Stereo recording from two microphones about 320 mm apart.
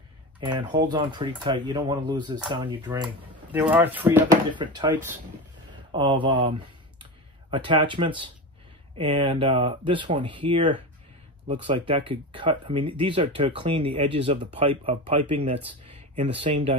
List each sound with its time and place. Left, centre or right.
0.5 s speech: centre
7.5 s speech: centre